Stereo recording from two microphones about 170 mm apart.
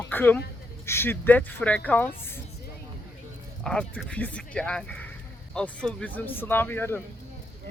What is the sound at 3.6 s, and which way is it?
Speech, 5° left (ahead or behind).